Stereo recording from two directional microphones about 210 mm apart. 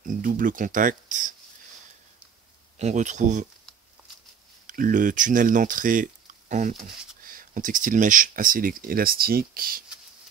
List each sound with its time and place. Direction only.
0.0 s speech: 40° right (ahead or behind)
2.8 s speech: 35° right (ahead or behind)
4.6 s speech: 40° right (ahead or behind)